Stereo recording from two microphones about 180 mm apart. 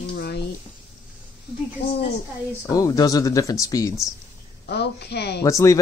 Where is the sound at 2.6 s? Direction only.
20° left (ahead or behind).